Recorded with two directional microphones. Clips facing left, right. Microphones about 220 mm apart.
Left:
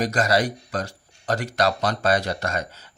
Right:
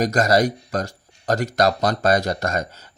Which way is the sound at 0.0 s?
40° right (ahead or behind).